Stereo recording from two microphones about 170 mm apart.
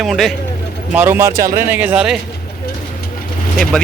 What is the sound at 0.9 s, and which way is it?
Speech, 10° right (ahead or behind).